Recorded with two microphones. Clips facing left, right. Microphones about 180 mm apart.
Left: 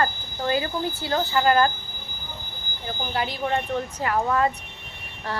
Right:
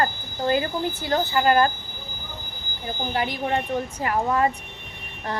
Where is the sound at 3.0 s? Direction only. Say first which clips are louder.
Right 1 dB; 15° right (ahead or behind).